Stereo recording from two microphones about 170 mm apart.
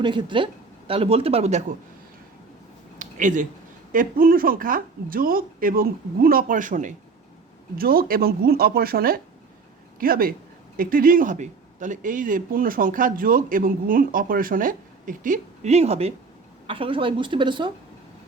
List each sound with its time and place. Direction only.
0.0 s speech: 25° right (ahead or behind)
3.0 s a sound: 50° right (ahead or behind)
3.9 s speech: 55° right (ahead or behind)
7.8 s a woman's voice: 60° right (ahead or behind); by 17.7 s 30° right (ahead or behind)